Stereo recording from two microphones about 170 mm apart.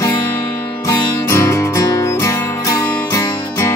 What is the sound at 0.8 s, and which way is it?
Music, 20° left (ahead or behind).